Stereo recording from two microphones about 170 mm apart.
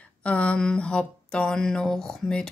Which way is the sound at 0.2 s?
5° left (ahead or behind).